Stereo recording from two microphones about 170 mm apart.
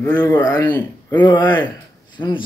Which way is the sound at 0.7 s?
10° left (ahead or behind).